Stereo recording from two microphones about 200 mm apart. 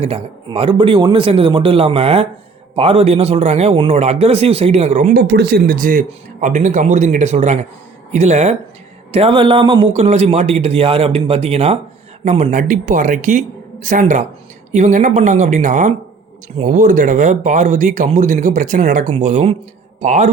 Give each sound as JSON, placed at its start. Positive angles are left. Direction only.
{"t": 0.0, "sound": "a man's voice", "side_deg": -30}
{"t": 5.1, "sound": "a man's voice", "side_deg": -50}